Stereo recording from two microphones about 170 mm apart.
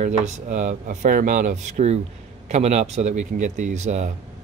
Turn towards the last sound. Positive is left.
turn(degrees=-45)  # may be behind; listen again after turning